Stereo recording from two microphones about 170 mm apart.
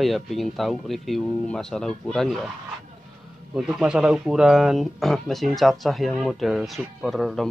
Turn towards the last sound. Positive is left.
turn(degrees=0)  # may be behind; listen again after turning